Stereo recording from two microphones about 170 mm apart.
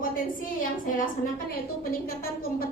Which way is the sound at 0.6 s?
55° left (ahead or behind).